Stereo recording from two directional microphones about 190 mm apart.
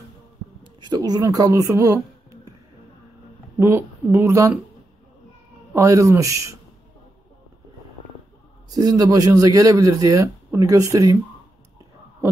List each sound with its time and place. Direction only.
0.7 s speech: 20° right (ahead or behind)
3.5 s speech: 15° right (ahead or behind)
5.7 s speech: 15° right (ahead or behind)
8.6 s speech: 20° right (ahead or behind)